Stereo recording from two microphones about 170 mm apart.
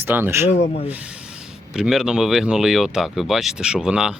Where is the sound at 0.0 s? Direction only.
15° right (ahead or behind).